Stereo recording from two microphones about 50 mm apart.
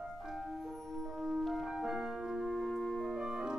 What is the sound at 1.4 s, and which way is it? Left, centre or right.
Music, centre.